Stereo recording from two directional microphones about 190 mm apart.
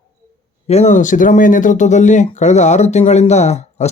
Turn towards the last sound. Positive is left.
turn(degrees=35)  # may be behind; listen again after turning